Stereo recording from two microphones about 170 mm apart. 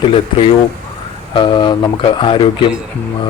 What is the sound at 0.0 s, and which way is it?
Speech, 35° left (ahead or behind).